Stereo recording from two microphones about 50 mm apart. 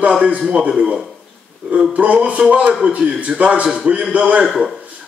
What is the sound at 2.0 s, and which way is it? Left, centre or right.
A man's voice, right.